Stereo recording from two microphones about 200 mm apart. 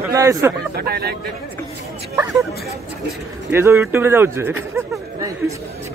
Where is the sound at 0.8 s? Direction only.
50° right (ahead or behind).